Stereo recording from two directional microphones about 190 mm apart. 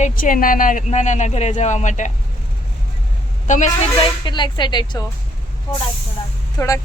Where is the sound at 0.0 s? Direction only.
45° left (ahead or behind).